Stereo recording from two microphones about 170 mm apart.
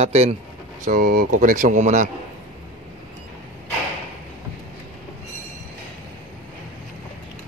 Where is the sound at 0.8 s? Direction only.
55° right (ahead or behind).